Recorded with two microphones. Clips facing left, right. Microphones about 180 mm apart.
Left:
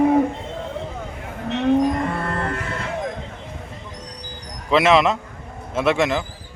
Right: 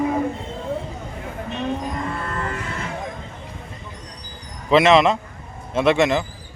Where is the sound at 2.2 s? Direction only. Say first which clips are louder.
Left 3 dB; 65° left (ahead or behind).